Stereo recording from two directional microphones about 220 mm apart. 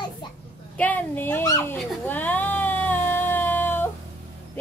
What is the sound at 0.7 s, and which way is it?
Dog, 5° left (ahead or behind).